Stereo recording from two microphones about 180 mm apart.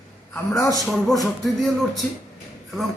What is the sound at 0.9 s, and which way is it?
Speech, centre (ahead or behind).